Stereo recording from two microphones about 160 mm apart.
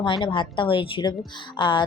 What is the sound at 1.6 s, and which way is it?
Music, 30° left (ahead or behind).